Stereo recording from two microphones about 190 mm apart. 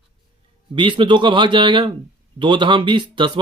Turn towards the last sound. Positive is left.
turn(degrees=-25)  # may be behind; listen again after turning